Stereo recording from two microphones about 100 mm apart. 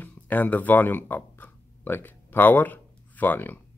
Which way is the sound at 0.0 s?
15° left (ahead or behind).